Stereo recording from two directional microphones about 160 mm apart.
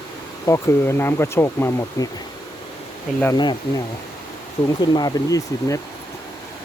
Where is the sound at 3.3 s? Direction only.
25° left (ahead or behind).